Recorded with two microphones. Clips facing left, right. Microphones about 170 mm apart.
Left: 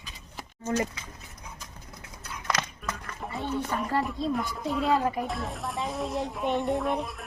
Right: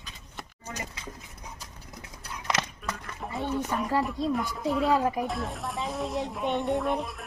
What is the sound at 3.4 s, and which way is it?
Speech, 15° right (ahead or behind).